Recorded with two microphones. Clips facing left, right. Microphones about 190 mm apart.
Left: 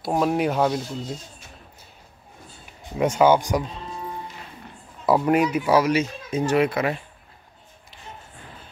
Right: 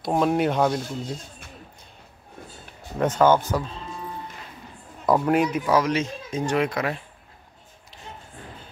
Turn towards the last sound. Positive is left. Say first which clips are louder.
# left 3 dB
turn(degrees=5)  # may be behind; listen again after turning